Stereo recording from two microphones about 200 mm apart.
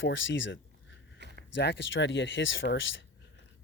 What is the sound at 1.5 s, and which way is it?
Speech, 65° left (ahead or behind).